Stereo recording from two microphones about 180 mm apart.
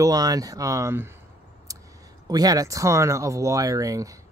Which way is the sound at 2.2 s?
20° right (ahead or behind).